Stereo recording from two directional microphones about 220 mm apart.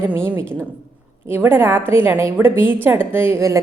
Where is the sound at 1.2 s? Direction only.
10° right (ahead or behind).